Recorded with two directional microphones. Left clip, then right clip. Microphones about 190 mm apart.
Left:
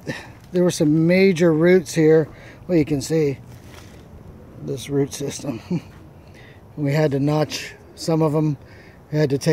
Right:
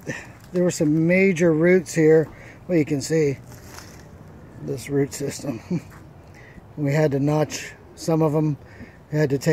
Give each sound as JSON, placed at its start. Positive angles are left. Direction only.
{"t": 0.5, "sound": "a man's voice", "side_deg": 10}
{"t": 4.9, "sound": "a man's voice", "side_deg": 0}
{"t": 6.8, "sound": "a man's voice", "side_deg": 0}